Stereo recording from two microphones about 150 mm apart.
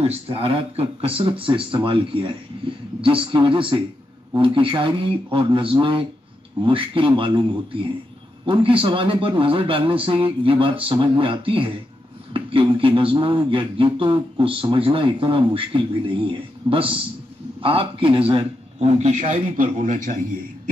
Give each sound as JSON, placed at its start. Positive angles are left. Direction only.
{"t": 0.0, "sound": "a man's voice", "side_deg": -40}